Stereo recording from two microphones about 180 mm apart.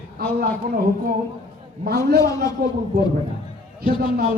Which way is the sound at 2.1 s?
60° right (ahead or behind).